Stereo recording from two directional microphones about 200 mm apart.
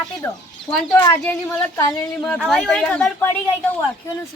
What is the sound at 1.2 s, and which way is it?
Speech, 5° left (ahead or behind).